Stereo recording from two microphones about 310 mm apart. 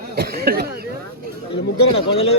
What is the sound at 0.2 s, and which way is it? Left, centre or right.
Speech, right.